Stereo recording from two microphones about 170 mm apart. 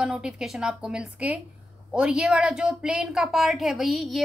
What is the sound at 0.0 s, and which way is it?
A woman's voice, 5° right (ahead or behind).